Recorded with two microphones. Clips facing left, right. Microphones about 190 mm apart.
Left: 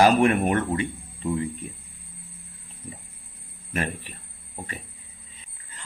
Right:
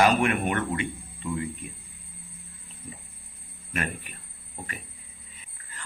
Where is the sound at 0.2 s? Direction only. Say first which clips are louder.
Left 5 dB; 35° left (ahead or behind).